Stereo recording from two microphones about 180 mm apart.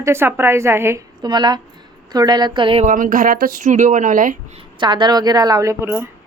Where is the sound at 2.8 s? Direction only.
50° right (ahead or behind).